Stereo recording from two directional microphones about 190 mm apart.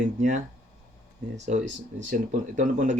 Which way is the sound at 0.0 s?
40° right (ahead or behind).